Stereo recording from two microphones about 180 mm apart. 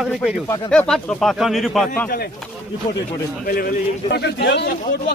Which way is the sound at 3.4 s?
55° left (ahead or behind).